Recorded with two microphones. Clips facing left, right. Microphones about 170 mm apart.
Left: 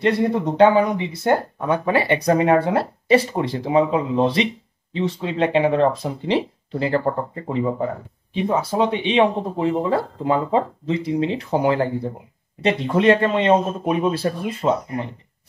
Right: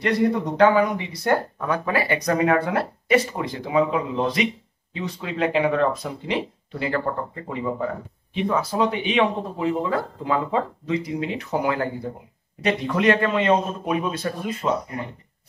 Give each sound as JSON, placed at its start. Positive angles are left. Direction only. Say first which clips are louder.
{"t": 0.0, "sound": "speech", "louder": "left 2 dB", "side_deg": 25}